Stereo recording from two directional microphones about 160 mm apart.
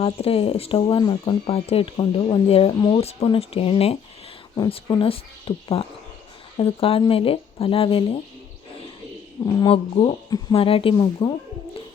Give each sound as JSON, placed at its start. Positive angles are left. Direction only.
{"t": 0.0, "sound": "speech", "side_deg": 35}
{"t": 4.5, "sound": "speech", "side_deg": 25}
{"t": 9.6, "sound": "speech", "side_deg": 35}